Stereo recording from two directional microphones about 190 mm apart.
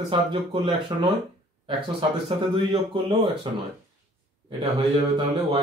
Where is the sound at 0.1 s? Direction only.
25° right (ahead or behind).